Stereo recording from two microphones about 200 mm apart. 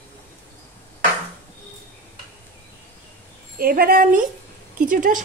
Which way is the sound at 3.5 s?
45° right (ahead or behind).